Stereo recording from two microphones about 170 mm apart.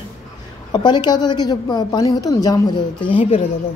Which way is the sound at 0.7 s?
25° left (ahead or behind).